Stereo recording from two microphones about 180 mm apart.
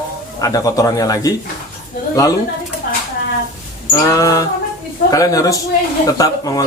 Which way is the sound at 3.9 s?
20° left (ahead or behind).